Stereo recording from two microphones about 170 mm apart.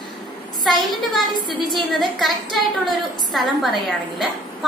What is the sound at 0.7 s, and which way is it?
A woman's voice, centre (ahead or behind).